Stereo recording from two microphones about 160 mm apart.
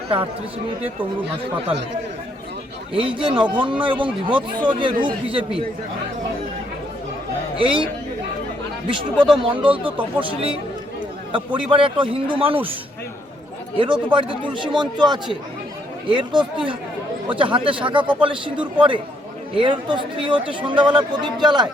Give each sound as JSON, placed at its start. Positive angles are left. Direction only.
{"t": 2.9, "sound": "speech", "side_deg": -30}
{"t": 7.6, "sound": "speech", "side_deg": -35}
{"t": 8.9, "sound": "speech", "side_deg": -30}
{"t": 13.7, "sound": "speech", "side_deg": -30}
{"t": 19.5, "sound": "speech", "side_deg": -30}